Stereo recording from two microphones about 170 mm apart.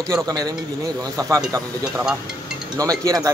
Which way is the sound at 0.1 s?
25° right (ahead or behind).